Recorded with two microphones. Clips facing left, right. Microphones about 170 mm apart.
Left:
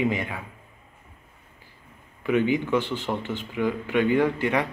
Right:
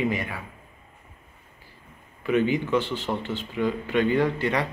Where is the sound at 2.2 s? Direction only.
15° left (ahead or behind).